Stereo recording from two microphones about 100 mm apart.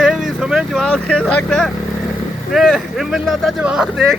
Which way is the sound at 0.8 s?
10° left (ahead or behind).